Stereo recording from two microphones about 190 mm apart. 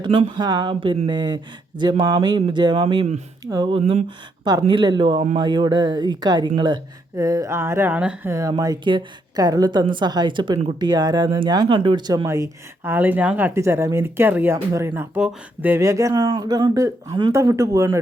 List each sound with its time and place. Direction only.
0.0 s speech: 25° right (ahead or behind)